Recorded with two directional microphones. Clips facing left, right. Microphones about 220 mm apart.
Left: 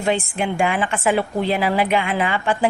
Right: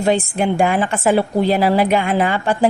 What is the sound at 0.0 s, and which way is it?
A woman's voice, 40° right (ahead or behind).